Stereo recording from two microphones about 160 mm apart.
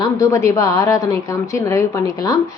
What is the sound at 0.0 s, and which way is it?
A woman's voice, 20° left (ahead or behind).